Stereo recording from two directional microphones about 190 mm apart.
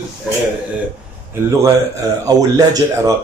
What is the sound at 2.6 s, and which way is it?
Speech, 20° right (ahead or behind).